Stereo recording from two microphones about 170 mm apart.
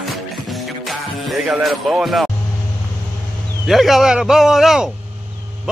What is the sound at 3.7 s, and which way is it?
A man's voice, centre (ahead or behind).